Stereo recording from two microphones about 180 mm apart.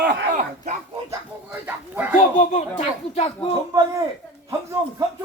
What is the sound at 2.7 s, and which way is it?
Speech, 35° left (ahead or behind).